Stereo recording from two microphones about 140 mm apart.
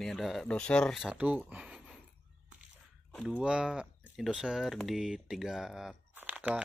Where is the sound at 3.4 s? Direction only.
5° right (ahead or behind).